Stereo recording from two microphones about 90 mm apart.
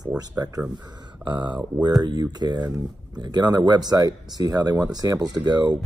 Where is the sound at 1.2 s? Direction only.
55° right (ahead or behind).